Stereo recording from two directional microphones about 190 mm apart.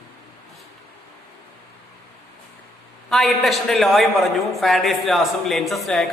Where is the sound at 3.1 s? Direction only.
Centre (ahead or behind).